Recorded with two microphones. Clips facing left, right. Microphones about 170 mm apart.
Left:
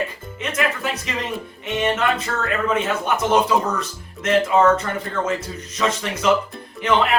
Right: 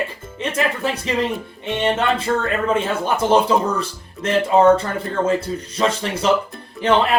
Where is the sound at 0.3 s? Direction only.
30° right (ahead or behind).